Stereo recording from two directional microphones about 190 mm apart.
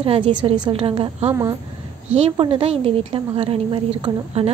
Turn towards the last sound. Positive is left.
turn(degrees=-30)  # may be behind; listen again after turning